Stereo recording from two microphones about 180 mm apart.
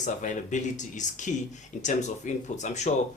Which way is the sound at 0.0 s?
45° left (ahead or behind).